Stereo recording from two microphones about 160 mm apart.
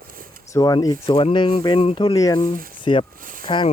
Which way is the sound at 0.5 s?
25° left (ahead or behind).